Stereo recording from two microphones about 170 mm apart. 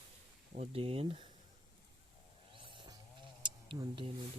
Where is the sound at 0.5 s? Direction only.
35° right (ahead or behind).